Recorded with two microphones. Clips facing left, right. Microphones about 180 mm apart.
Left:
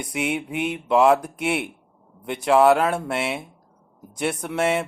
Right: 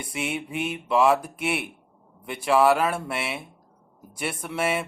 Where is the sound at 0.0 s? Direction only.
20° left (ahead or behind).